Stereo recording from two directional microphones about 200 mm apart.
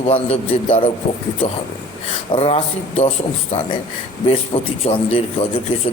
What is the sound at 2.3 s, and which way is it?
Speech, 30° left (ahead or behind).